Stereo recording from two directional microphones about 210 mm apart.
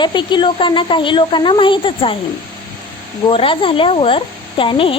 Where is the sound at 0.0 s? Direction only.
20° left (ahead or behind).